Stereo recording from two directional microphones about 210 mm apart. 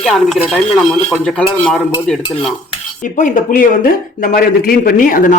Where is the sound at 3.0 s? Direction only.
35° left (ahead or behind).